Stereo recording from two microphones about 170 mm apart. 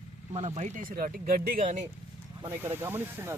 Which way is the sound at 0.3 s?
40° right (ahead or behind).